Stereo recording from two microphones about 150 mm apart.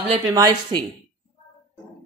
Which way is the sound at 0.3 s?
25° right (ahead or behind).